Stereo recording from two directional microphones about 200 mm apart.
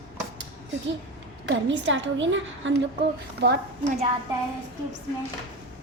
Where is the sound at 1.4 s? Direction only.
65° right (ahead or behind).